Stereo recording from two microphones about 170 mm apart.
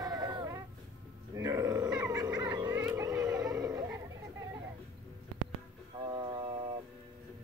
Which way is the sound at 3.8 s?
15° right (ahead or behind).